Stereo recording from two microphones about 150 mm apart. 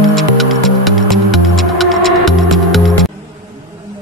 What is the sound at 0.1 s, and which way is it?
Music, centre (ahead or behind).